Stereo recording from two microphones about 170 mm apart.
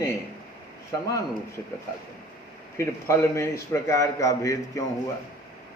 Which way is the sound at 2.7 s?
15° left (ahead or behind).